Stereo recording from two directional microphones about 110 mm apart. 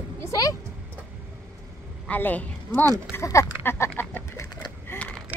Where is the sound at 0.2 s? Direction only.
30° left (ahead or behind).